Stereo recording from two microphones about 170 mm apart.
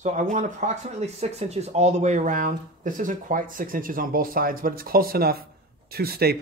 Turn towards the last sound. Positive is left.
turn(degrees=-65)  # may be behind; listen again after turning